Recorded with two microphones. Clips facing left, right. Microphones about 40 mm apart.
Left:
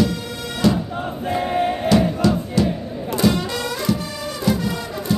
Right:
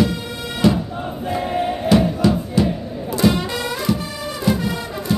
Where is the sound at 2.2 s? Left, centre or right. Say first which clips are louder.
Right 1 dB; right.